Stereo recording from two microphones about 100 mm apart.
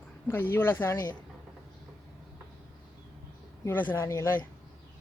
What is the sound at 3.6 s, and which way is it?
Speech, 20° left (ahead or behind).